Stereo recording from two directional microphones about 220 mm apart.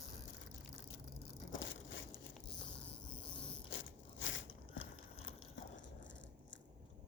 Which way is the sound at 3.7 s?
60° left (ahead or behind).